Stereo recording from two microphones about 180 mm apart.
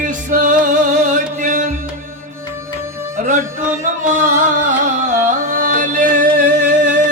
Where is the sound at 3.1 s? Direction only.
45° right (ahead or behind).